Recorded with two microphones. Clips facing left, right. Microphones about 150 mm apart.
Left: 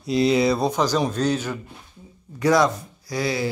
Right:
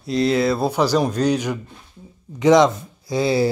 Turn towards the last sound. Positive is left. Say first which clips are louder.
# right 6 dB
turn(degrees=-25)  # may be behind; listen again after turning